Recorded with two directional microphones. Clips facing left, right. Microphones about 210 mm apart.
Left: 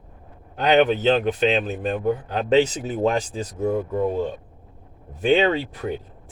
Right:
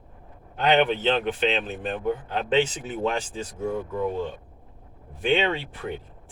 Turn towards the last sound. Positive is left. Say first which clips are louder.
# left 5 dB
turn(degrees=40)  # may be behind; listen again after turning